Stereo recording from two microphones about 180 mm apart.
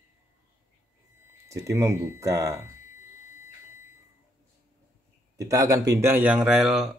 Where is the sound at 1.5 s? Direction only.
15° right (ahead or behind).